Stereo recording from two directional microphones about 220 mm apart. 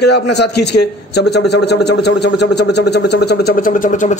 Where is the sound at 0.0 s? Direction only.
50° left (ahead or behind).